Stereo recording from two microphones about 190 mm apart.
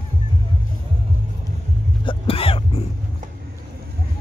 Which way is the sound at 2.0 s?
30° left (ahead or behind).